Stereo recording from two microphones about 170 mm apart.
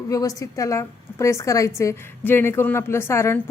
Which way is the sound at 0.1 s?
20° left (ahead or behind).